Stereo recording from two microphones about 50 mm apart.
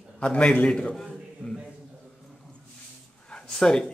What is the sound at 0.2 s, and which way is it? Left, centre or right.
Speech, left.